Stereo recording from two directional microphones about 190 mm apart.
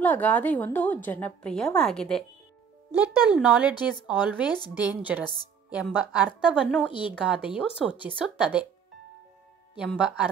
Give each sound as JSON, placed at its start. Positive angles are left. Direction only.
{"t": 0.0, "sound": "a woman's voice", "side_deg": 10}
{"t": 3.3, "sound": "a woman's voice", "side_deg": -5}
{"t": 6.9, "sound": "a woman's voice", "side_deg": 25}
{"t": 7.2, "sound": "a woman's voice", "side_deg": -5}
{"t": 9.8, "sound": "a woman's voice", "side_deg": -5}